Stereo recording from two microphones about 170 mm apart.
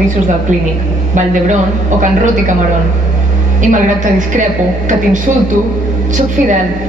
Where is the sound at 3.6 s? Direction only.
50° right (ahead or behind).